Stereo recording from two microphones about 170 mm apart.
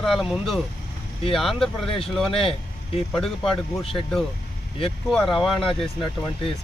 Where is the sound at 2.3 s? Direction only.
30° left (ahead or behind).